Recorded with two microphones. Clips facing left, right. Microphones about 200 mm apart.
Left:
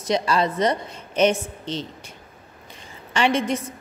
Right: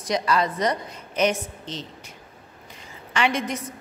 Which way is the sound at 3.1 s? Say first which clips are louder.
Left 3 dB; 30° left (ahead or behind).